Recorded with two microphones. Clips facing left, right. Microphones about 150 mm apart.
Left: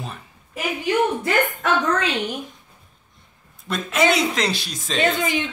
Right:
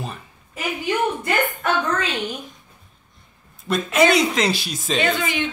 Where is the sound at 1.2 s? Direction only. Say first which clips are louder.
Left 1 dB; 90° left.